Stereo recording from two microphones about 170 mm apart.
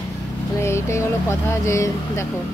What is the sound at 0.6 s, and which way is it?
Speech, 15° left (ahead or behind).